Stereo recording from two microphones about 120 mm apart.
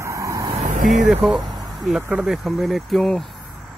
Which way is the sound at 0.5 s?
90° right.